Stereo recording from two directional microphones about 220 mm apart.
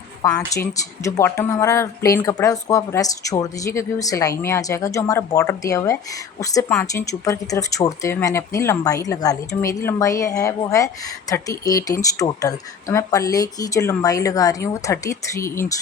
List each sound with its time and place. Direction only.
0.2 s speech: 15° left (ahead or behind)